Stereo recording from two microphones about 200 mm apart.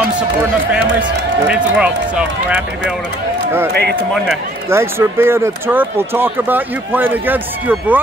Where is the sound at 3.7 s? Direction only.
55° right (ahead or behind).